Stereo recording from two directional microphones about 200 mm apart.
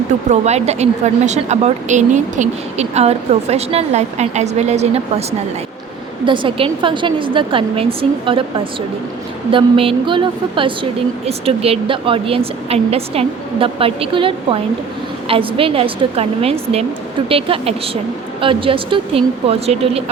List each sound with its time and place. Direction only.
0.3 s a woman's voice: 35° right (ahead or behind)
6.2 s speech: 25° right (ahead or behind)